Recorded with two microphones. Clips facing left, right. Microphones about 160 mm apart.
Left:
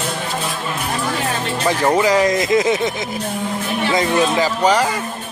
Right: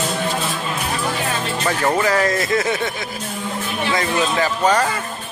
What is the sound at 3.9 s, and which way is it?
Speech, 20° left (ahead or behind).